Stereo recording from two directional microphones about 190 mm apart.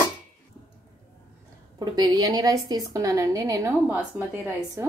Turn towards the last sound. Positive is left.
turn(degrees=-15)  # may be behind; listen again after turning